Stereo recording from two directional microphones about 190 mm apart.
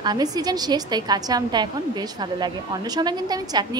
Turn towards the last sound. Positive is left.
turn(degrees=-20)  # may be behind; listen again after turning